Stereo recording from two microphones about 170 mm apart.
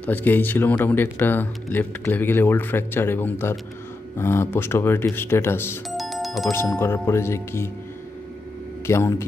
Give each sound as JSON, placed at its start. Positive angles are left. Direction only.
{"t": 0.0, "sound": "speech", "side_deg": 10}
{"t": 5.9, "sound": "music", "side_deg": 0}
{"t": 6.5, "sound": "speech", "side_deg": 15}
{"t": 8.8, "sound": "speech", "side_deg": 15}